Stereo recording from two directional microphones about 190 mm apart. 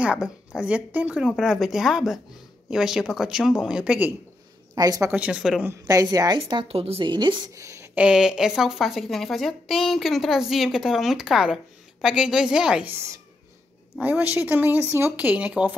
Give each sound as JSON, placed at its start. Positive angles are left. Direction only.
{"t": 0.0, "sound": "a woman's voice", "side_deg": -5}
{"t": 4.7, "sound": "a woman's voice", "side_deg": -20}
{"t": 5.1, "sound": "a woman's voice", "side_deg": -5}
{"t": 5.7, "sound": "a woman's voice", "side_deg": -20}